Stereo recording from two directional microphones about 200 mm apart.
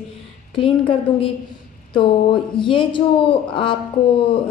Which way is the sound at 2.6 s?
25° left (ahead or behind).